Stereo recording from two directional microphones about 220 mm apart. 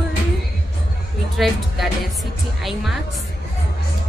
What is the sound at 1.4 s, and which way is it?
Speech, centre (ahead or behind).